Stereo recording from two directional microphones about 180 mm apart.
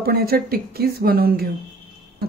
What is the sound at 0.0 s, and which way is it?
Speech, 60° right (ahead or behind).